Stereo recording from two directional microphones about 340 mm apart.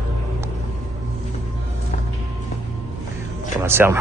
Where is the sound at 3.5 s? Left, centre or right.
Centre.